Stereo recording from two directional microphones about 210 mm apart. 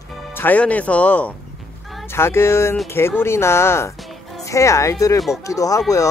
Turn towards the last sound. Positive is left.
turn(degrees=15)  # may be behind; listen again after turning